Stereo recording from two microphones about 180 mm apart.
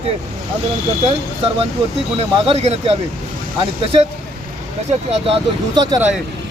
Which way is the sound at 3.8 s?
35° right (ahead or behind).